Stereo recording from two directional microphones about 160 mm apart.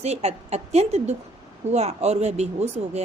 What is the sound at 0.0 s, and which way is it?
A woman's voice, 45° right (ahead or behind).